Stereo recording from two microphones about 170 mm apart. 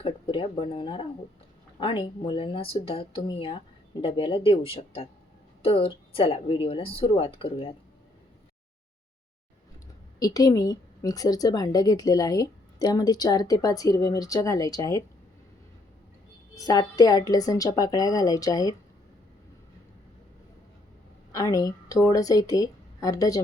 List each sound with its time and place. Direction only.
0.0 s speech: 30° left (ahead or behind)
10.2 s a woman's voice: 20° left (ahead or behind)
16.6 s a woman's voice: 20° left (ahead or behind)
21.3 s a woman's voice: 20° left (ahead or behind)